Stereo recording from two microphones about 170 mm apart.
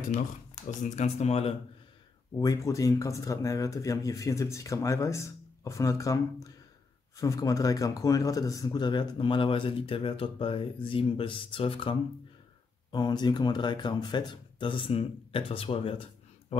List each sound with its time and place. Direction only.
0.7 s speech: 45° left (ahead or behind)
2.3 s speech: 20° left (ahead or behind); by 16.5 s 35° left (ahead or behind)